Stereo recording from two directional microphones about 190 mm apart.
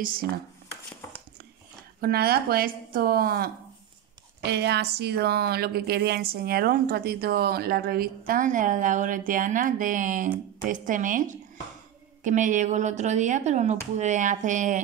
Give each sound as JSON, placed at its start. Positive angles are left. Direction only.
{"t": 0.0, "sound": "speech", "side_deg": -50}
{"t": 2.0, "sound": "speech", "side_deg": -55}
{"t": 8.3, "sound": "speech", "side_deg": -45}